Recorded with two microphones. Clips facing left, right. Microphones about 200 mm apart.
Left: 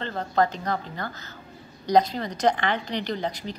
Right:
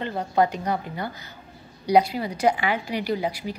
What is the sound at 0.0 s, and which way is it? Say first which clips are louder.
A woman's voice: right 2 dB; 10° right (ahead or behind).